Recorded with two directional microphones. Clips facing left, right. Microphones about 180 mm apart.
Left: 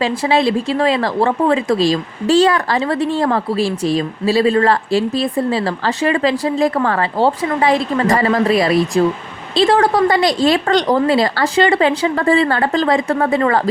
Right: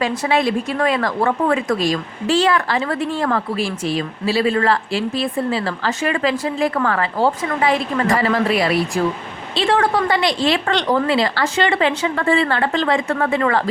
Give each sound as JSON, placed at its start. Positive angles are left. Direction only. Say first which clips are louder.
{"t": 0.0, "sound": "speech", "louder": "left 3 dB", "side_deg": 30}